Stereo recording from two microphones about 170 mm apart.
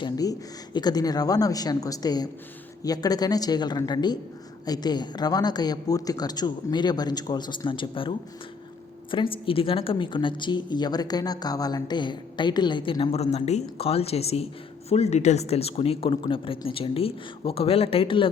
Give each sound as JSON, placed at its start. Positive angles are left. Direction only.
{"t": 0.0, "sound": "a woman's voice", "side_deg": 25}